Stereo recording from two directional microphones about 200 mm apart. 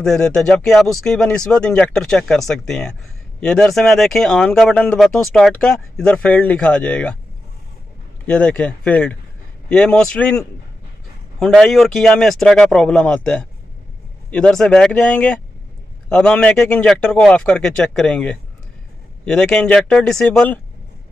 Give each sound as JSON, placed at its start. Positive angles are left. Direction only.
{"t": 0.0, "sound": "speech", "side_deg": 5}
{"t": 8.3, "sound": "speech", "side_deg": 5}